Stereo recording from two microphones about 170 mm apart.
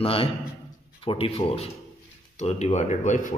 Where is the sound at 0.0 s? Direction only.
35° left (ahead or behind).